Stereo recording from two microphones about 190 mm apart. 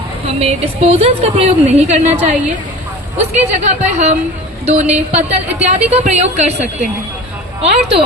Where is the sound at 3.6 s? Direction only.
40° right (ahead or behind).